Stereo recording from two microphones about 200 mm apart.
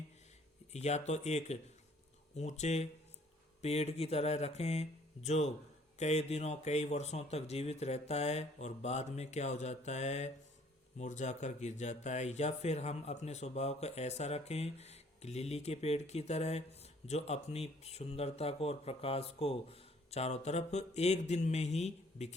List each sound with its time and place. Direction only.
0.7 s speech: 35° left (ahead or behind)